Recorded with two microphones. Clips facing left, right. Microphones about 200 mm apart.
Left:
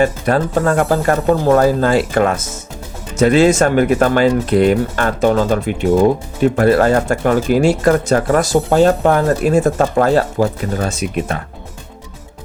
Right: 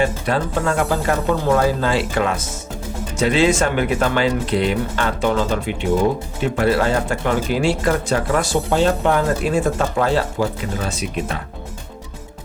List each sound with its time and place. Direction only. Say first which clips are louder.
0.0 s speech: left 5 dB; 45° left (ahead or behind)